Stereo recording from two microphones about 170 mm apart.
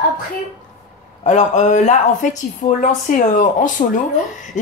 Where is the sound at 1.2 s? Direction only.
45° left (ahead or behind).